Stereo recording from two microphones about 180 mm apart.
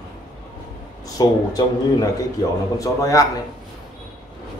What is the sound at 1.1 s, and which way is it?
Speech, 20° left (ahead or behind).